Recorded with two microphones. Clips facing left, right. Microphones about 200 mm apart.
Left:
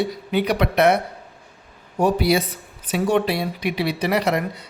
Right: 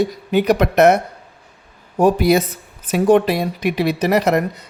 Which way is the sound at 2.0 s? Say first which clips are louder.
Right 5 dB; 45° right (ahead or behind).